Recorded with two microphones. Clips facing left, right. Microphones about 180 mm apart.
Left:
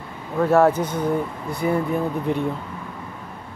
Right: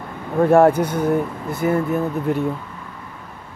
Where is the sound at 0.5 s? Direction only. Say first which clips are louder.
Right 3 dB; 10° right (ahead or behind).